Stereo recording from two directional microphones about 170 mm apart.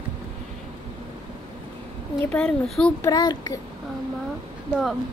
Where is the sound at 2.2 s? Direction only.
5° left (ahead or behind).